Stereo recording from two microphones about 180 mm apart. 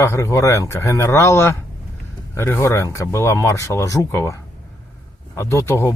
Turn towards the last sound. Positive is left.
turn(degrees=15)  # may be behind; listen again after turning